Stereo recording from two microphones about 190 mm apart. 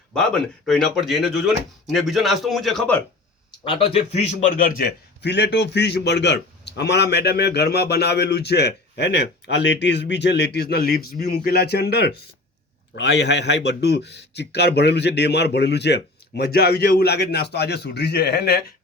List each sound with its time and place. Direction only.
0.1 s speech: 5° left (ahead or behind)
3.6 s a man's voice: 30° left (ahead or behind); by 18.6 s 55° left (ahead or behind)